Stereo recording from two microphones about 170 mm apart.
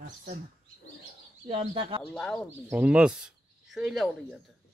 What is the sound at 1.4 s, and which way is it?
Speech, 30° right (ahead or behind).